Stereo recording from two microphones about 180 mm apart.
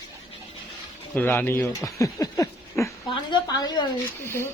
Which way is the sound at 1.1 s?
10° left (ahead or behind).